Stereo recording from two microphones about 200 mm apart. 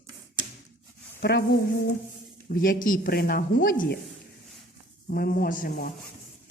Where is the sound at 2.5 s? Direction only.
45° left (ahead or behind).